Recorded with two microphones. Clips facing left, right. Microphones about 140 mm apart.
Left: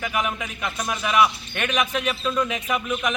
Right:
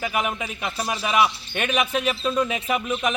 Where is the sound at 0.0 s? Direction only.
30° right (ahead or behind).